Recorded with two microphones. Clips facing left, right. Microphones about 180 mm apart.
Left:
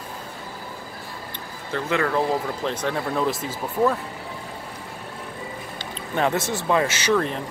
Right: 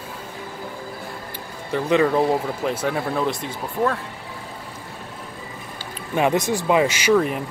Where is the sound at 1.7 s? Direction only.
15° right (ahead or behind); by 3.9 s centre (ahead or behind).